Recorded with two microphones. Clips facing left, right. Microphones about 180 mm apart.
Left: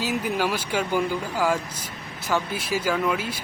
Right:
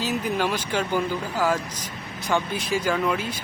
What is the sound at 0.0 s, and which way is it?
Speech, 10° left (ahead or behind).